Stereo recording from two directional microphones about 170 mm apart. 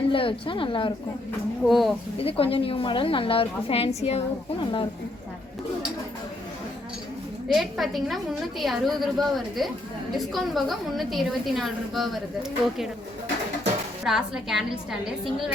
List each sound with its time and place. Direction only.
0.1 s a woman's voice: 30° left (ahead or behind)
1.6 s a woman's voice: centre (ahead or behind)
2.1 s a woman's voice: 35° left (ahead or behind)
7.4 s a woman's voice: centre (ahead or behind)
14.0 s a woman's voice: centre (ahead or behind)